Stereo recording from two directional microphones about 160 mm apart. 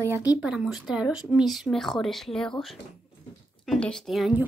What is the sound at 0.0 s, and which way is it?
Speech, 10° right (ahead or behind).